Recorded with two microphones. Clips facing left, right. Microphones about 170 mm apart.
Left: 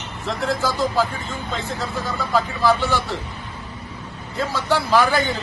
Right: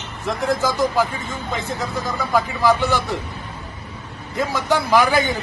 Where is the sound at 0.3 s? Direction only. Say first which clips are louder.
Right 2 dB; 15° right (ahead or behind).